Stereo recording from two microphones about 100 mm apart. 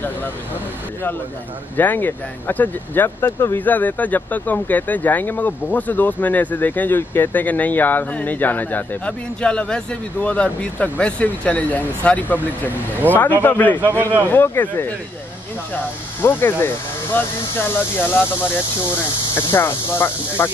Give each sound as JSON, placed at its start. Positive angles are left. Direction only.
{"t": 1.8, "sound": "speech", "side_deg": 20}
{"t": 19.3, "sound": "speech", "side_deg": 25}